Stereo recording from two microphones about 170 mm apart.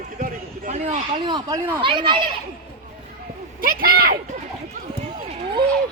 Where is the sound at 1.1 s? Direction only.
25° right (ahead or behind).